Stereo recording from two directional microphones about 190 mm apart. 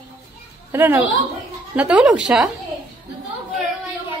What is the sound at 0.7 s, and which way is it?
A woman's voice, 10° right (ahead or behind).